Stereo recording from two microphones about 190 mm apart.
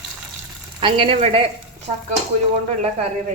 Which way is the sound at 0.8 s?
25° right (ahead or behind).